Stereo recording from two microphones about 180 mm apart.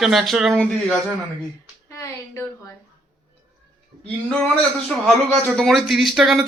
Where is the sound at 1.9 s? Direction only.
15° left (ahead or behind).